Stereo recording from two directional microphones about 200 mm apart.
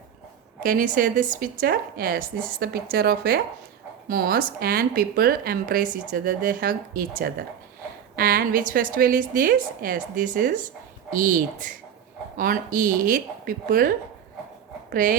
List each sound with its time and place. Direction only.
0.6 s a woman's voice: 45° right (ahead or behind)